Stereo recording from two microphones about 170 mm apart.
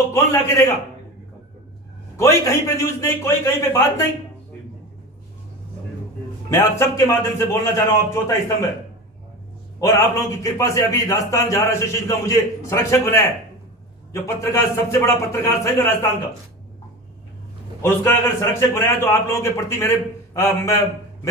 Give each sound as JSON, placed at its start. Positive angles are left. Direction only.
{"t": 0.1, "sound": "a man's voice", "side_deg": 15}
{"t": 2.1, "sound": "a man's voice", "side_deg": 15}
{"t": 6.5, "sound": "a man's voice", "side_deg": 15}
{"t": 9.8, "sound": "a man's voice", "side_deg": 15}
{"t": 17.8, "sound": "a man's voice", "side_deg": 15}